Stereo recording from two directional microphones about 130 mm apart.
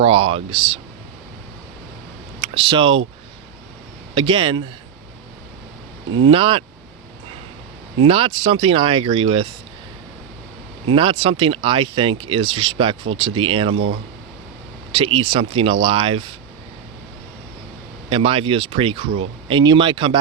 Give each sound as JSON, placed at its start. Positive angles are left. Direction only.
{"t": 0.0, "sound": "speech", "side_deg": -45}
{"t": 2.6, "sound": "speech", "side_deg": -40}
{"t": 4.1, "sound": "speech", "side_deg": -40}
{"t": 6.3, "sound": "speech", "side_deg": -40}
{"t": 8.0, "sound": "speech", "side_deg": -45}
{"t": 10.9, "sound": "speech", "side_deg": -45}
{"t": 14.9, "sound": "speech", "side_deg": -45}
{"t": 18.1, "sound": "speech", "side_deg": -45}